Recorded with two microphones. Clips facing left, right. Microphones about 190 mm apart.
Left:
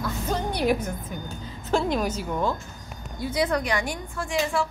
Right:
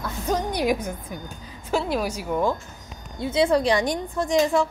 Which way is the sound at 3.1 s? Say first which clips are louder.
Right 5 dB; 25° right (ahead or behind).